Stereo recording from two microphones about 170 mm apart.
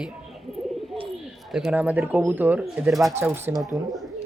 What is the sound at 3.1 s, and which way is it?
Speech, 15° right (ahead or behind).